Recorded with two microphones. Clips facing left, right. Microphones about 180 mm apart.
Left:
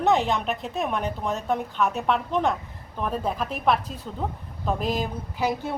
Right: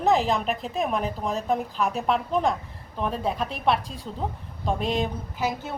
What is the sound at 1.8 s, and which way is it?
Speech, 35° right (ahead or behind).